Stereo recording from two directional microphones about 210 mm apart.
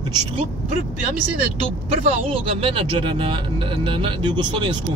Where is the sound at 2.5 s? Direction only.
25° right (ahead or behind).